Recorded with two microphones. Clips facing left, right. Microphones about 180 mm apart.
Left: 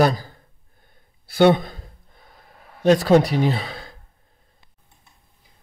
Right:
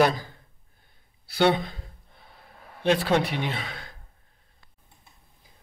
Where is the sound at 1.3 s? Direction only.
50° left (ahead or behind).